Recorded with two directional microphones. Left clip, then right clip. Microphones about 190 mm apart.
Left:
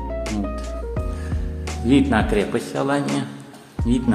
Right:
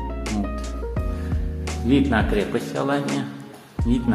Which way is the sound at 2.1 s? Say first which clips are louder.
Left 2 dB; 15° left (ahead or behind).